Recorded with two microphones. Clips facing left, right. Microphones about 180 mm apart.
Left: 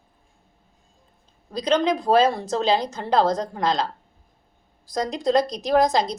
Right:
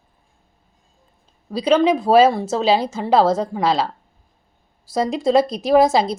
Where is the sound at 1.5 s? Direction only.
10° right (ahead or behind).